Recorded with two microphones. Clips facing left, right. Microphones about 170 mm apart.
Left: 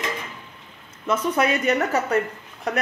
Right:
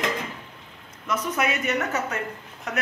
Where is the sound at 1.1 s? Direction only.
30° left (ahead or behind).